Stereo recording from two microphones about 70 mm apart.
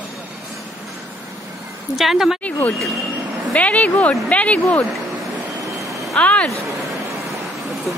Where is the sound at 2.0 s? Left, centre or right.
Centre.